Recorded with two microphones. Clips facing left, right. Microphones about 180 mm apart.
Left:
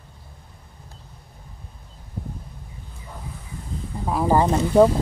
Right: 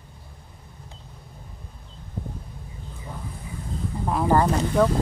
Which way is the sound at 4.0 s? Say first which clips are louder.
Left 1 dB; 5° left (ahead or behind).